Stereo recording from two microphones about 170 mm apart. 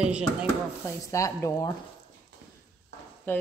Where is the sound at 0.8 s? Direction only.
20° left (ahead or behind).